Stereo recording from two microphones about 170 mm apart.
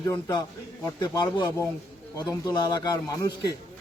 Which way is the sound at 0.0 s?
20° left (ahead or behind).